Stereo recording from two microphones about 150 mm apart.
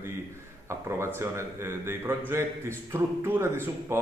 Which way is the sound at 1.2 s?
20° right (ahead or behind).